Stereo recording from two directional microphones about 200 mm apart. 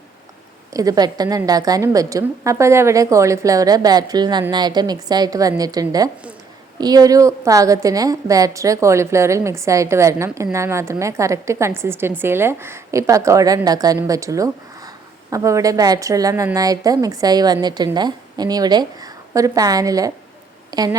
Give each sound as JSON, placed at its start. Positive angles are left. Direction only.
{"t": 0.7, "sound": "a woman's voice", "side_deg": -15}